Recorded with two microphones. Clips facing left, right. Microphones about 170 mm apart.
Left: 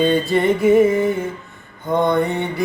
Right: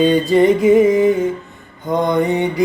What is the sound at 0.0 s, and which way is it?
Mantra, 15° right (ahead or behind).